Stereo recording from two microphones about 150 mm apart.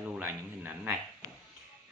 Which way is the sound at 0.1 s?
15° right (ahead or behind).